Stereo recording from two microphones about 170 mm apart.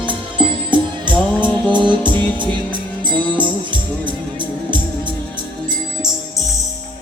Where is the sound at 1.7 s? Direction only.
30° right (ahead or behind).